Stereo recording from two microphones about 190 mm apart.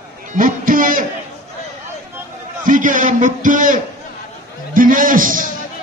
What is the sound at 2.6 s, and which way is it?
A man's voice, 45° right (ahead or behind).